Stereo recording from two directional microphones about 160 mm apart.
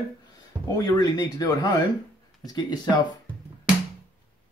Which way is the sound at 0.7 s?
25° left (ahead or behind).